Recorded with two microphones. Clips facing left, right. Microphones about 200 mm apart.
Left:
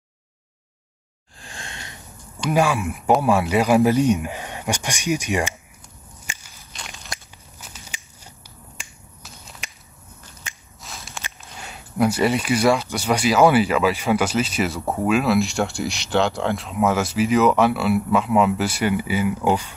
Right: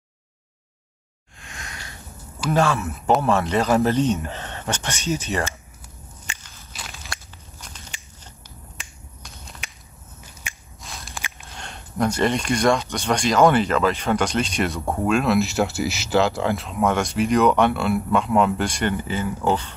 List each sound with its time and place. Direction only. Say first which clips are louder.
1.4 s a sound: left 1 dB; 30° left (ahead or behind)
2.5 s speech: left 1 dB; 10° left (ahead or behind)
6.2 s walk: left 1 dB; 10° left (ahead or behind)
6.7 s walk: even; 5° right (ahead or behind)
7.6 s a sound: left 1 dB; 5° left (ahead or behind)
8.7 s finger snapping: even; centre (ahead or behind)
10.8 s walk: even; centre (ahead or behind)
11.4 s a sound: even; 5° left (ahead or behind)
12.9 s speech: left 1 dB; 5° left (ahead or behind)